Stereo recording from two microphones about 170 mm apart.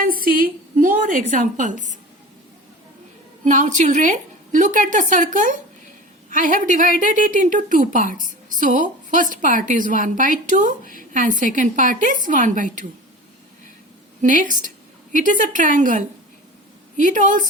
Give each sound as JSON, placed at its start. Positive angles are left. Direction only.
{"t": 0.0, "sound": "speech", "side_deg": -55}
{"t": 3.4, "sound": "a woman's voice", "side_deg": -45}
{"t": 14.2, "sound": "a woman's voice", "side_deg": -50}